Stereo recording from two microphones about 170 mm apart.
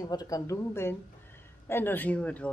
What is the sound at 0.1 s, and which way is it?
A woman's voice, 20° left (ahead or behind).